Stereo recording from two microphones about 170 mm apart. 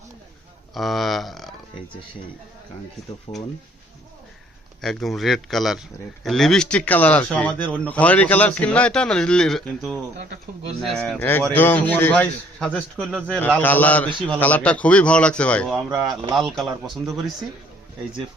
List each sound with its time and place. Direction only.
0.7 s speech: centre (ahead or behind)
3.3 s speech: 30° left (ahead or behind)
4.8 s a man's voice: centre (ahead or behind)
11.2 s speech: 10° left (ahead or behind)
15.7 s a man's voice: 5° right (ahead or behind)